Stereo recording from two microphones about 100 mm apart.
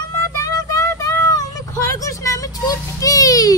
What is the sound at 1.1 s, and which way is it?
Vehicle, 30° left (ahead or behind).